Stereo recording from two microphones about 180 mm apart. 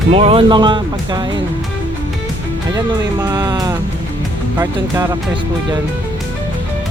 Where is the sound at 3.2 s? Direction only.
20° right (ahead or behind).